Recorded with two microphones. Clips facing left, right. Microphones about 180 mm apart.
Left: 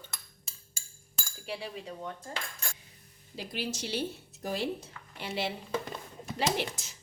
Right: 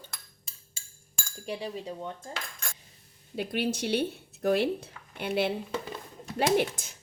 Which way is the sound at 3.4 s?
60° right (ahead or behind).